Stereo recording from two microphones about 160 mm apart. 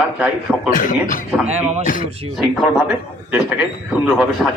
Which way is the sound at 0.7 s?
60° left (ahead or behind).